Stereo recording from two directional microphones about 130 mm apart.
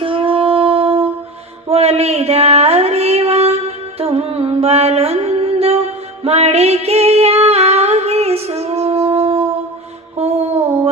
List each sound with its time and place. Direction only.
0.0 s a sound: 45° right (ahead or behind)
1.6 s music: 50° right (ahead or behind)
6.2 s female singing: 55° right (ahead or behind)
10.2 s music: 55° right (ahead or behind)